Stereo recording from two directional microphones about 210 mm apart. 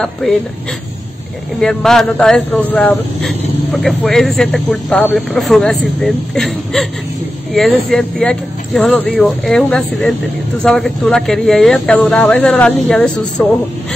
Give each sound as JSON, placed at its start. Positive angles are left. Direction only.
{"t": 1.6, "sound": "a man's voice", "side_deg": 0}